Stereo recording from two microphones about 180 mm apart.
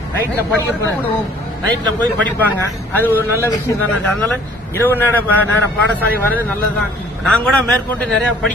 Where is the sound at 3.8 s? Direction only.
10° left (ahead or behind).